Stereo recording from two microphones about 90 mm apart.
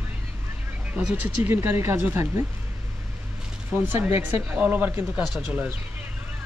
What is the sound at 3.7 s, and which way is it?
Speech, 25° right (ahead or behind).